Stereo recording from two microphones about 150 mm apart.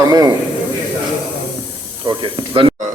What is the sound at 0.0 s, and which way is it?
Speech, 25° right (ahead or behind).